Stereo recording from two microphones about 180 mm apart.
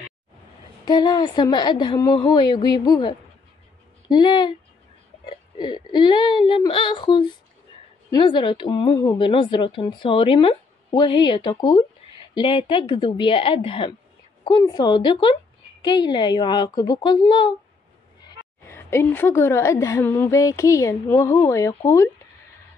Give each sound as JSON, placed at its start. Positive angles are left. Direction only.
{"t": 0.8, "sound": "speech", "side_deg": 25}
{"t": 18.6, "sound": "a woman's voice", "side_deg": 15}